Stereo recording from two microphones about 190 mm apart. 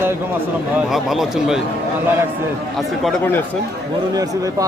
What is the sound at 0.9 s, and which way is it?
Speech, centre (ahead or behind).